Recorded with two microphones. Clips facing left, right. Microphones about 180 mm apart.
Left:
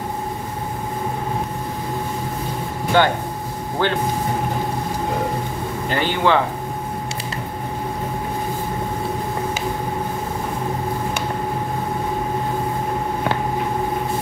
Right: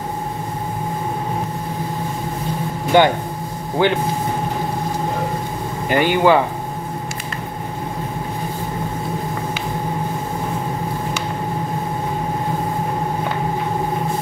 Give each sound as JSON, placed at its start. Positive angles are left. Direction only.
{"t": 2.9, "sound": "speech", "side_deg": -15}
{"t": 5.9, "sound": "speech", "side_deg": -10}